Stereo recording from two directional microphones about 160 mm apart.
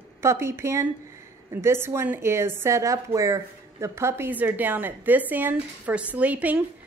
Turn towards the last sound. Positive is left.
turn(degrees=-10)  # may be behind; listen again after turning